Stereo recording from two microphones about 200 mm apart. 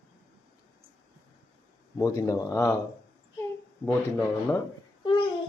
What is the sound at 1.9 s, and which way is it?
Speech, 15° left (ahead or behind).